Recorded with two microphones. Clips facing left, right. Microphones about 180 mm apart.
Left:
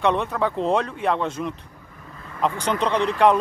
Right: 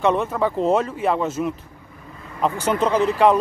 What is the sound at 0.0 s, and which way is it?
Speech, centre (ahead or behind).